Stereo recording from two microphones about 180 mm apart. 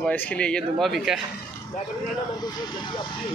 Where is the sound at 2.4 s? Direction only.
25° left (ahead or behind).